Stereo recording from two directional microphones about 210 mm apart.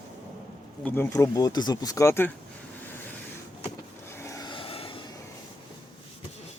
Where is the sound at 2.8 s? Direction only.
10° left (ahead or behind); by 5.0 s 25° left (ahead or behind).